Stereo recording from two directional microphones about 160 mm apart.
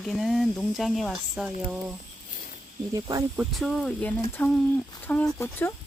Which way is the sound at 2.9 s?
25° right (ahead or behind).